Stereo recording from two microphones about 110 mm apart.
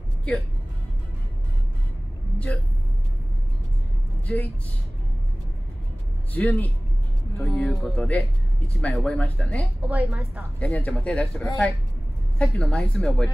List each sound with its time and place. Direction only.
2.3 s speech: 15° left (ahead or behind)
4.3 s speech: 10° left (ahead or behind)
6.3 s speech: 15° left (ahead or behind)
9.8 s a woman's voice: 15° right (ahead or behind)
10.6 s speech: 15° left (ahead or behind)